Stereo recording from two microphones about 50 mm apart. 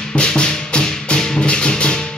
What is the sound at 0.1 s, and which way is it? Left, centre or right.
Music, centre.